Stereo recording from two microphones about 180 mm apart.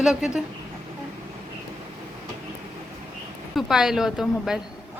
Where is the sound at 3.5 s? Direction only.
5° right (ahead or behind).